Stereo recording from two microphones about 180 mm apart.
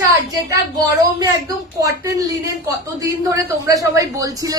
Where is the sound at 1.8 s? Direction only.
20° right (ahead or behind).